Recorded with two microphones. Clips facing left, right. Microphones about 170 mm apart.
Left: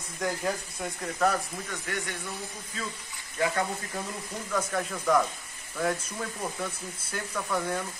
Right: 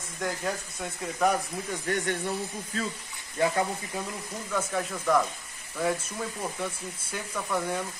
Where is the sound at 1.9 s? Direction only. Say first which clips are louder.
Right 8 dB; 40° right (ahead or behind).